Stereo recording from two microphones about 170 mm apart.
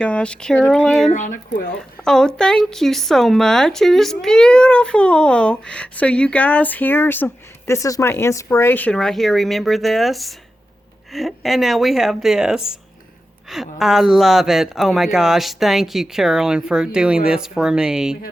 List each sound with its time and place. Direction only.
0.0 s a woman's voice: 5° left (ahead or behind)
1.1 s speech: 50° left (ahead or behind)
2.0 s a woman's voice: 5° left (ahead or behind)
13.7 s a woman's voice: centre (ahead or behind)